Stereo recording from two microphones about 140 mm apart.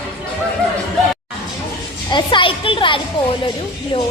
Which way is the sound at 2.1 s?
35° left (ahead or behind).